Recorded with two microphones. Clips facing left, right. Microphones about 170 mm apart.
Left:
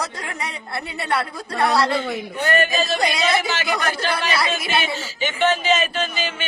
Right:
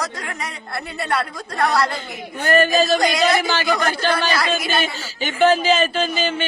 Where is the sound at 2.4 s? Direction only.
35° right (ahead or behind).